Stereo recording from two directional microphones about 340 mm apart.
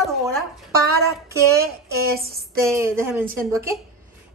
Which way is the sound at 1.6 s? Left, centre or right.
Right.